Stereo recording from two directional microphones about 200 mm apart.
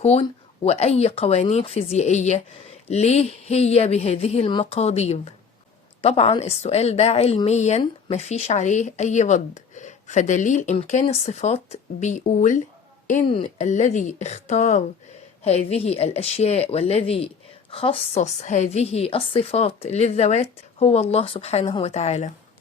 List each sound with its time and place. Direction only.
0.0 s speech: 30° left (ahead or behind)